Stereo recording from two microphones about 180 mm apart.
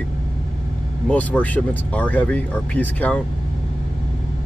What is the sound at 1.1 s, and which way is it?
Speech, 10° left (ahead or behind).